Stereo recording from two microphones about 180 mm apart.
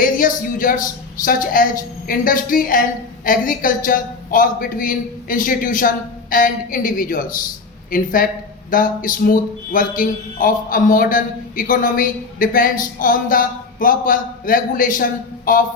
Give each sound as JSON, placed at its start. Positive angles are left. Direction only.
{"t": 0.0, "sound": "a man's voice", "side_deg": 50}